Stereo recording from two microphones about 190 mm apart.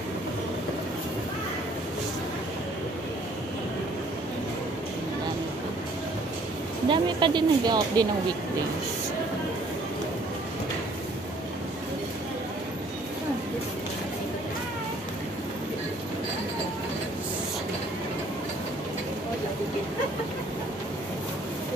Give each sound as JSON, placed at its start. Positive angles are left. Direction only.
{"t": 6.9, "sound": "speech", "side_deg": -25}